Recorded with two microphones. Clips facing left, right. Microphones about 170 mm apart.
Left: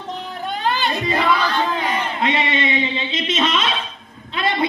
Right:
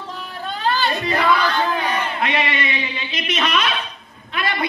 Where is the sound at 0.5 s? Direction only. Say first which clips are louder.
Right 1 dB; 20° left (ahead or behind).